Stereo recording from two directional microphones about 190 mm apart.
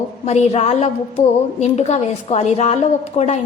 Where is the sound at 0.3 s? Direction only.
35° left (ahead or behind).